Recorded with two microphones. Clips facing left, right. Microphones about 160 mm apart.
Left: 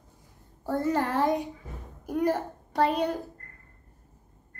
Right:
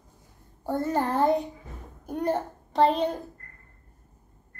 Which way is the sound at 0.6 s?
25° right (ahead or behind).